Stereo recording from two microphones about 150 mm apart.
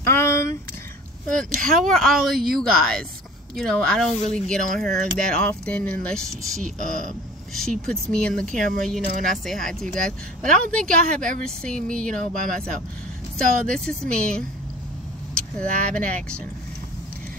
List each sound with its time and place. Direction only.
0.0 s a sound: 15° left (ahead or behind)
1.2 s speech: 5° left (ahead or behind)
1.6 s speech: 65° right (ahead or behind)
1.9 s speech: centre (ahead or behind)
6.6 s speech: 60° right (ahead or behind)
7.5 s speech: 5° left (ahead or behind)
13.7 s speech: 5° left (ahead or behind)